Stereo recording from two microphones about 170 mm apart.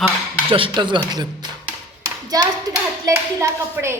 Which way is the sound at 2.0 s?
20° right (ahead or behind).